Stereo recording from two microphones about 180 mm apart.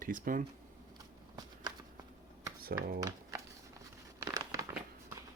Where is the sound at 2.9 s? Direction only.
20° right (ahead or behind).